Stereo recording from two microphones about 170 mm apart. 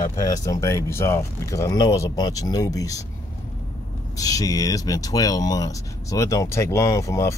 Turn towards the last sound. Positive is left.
turn(degrees=20)  # may be behind; listen again after turning